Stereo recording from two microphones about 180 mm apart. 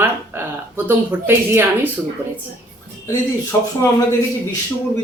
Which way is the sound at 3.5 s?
15° left (ahead or behind).